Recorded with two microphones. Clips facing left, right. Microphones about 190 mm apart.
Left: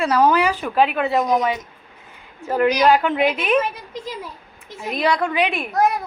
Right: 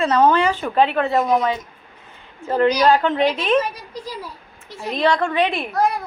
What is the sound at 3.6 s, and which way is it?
A child's voice, 25° left (ahead or behind).